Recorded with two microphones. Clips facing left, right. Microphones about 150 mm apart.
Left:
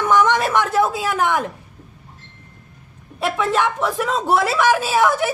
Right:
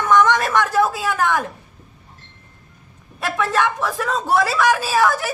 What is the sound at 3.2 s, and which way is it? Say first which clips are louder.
A woman's voice: left 1 dB; 20° left (ahead or behind).